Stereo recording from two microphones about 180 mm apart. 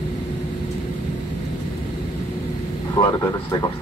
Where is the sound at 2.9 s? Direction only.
20° left (ahead or behind).